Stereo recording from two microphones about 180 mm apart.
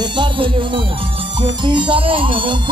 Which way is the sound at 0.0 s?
25° right (ahead or behind).